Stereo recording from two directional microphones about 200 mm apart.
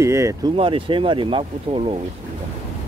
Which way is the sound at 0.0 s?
15° right (ahead or behind).